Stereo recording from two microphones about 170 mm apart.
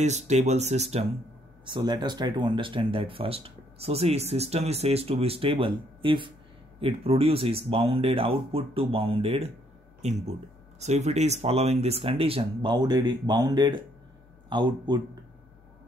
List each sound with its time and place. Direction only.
0.0 s speech: 40° right (ahead or behind)
1.7 s speech: 25° right (ahead or behind)